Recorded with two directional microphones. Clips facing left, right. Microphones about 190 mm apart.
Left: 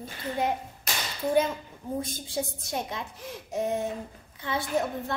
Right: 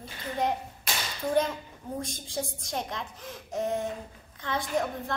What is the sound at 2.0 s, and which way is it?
A woman's voice, 5° left (ahead or behind).